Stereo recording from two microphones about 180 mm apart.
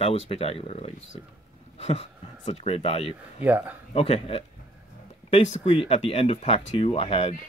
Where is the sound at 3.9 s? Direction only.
35° left (ahead or behind).